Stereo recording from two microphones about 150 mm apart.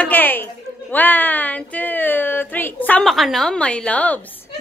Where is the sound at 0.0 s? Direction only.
10° left (ahead or behind).